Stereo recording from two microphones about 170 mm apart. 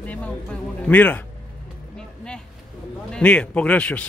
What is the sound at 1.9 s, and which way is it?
Vehicle, 5° left (ahead or behind).